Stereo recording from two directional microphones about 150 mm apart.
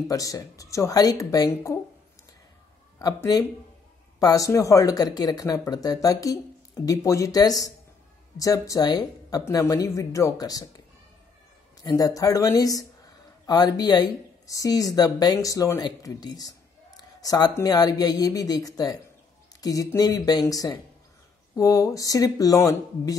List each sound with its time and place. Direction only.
0.1 s a woman's voice: 25° left (ahead or behind)
3.0 s a woman's voice: 25° left (ahead or behind)
11.8 s a woman's voice: 25° left (ahead or behind)